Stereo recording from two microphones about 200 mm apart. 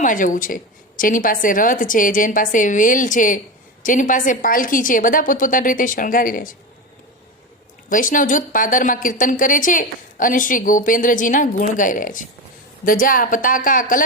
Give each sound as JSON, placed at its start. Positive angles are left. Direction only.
{"t": 0.0, "sound": "a woman's voice", "side_deg": 40}
{"t": 7.9, "sound": "a woman's voice", "side_deg": 40}